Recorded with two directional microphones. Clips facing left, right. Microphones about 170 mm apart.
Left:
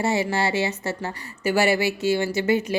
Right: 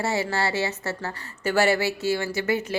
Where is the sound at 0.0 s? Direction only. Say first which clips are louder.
Left 3 dB; 15° left (ahead or behind).